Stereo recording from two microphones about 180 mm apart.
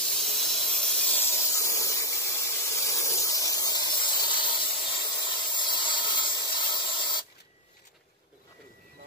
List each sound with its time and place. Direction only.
0.1 s hiss: centre (ahead or behind)
1.5 s spray: 15° left (ahead or behind)